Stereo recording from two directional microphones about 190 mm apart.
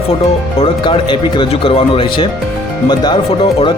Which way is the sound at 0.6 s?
25° left (ahead or behind).